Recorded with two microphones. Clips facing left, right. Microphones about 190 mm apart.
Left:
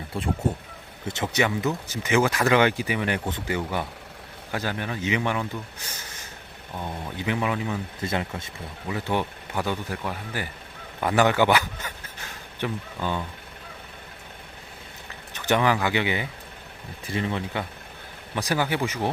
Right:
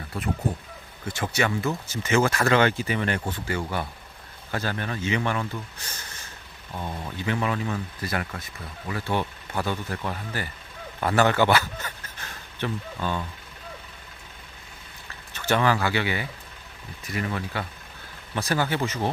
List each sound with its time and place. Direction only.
0.1 s speech: 30° left (ahead or behind)
6.7 s speech: 15° left (ahead or behind)
15.3 s speech: 15° left (ahead or behind)